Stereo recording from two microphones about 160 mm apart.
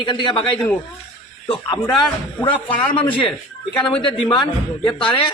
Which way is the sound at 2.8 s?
35° left (ahead or behind).